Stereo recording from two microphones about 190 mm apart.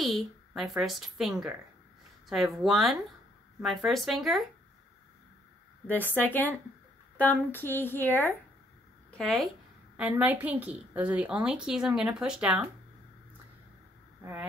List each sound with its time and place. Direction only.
0.0 s speech: centre (ahead or behind)
6.1 s a woman's voice: 10° left (ahead or behind); by 12.6 s 5° right (ahead or behind)